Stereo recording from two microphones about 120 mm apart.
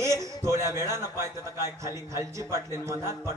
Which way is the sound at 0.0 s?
25° right (ahead or behind).